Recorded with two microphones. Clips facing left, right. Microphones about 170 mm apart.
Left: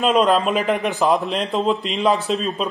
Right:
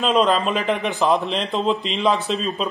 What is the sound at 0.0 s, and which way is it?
Speech, centre (ahead or behind).